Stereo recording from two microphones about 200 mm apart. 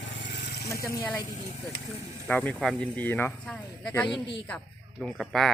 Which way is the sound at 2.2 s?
5° left (ahead or behind).